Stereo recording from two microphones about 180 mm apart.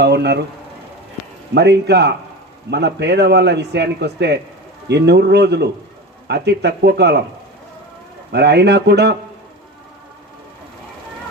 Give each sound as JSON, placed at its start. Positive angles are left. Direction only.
{"t": 0.0, "sound": "speech", "side_deg": -70}
{"t": 1.5, "sound": "a man's voice", "side_deg": -65}
{"t": 8.3, "sound": "speech", "side_deg": -65}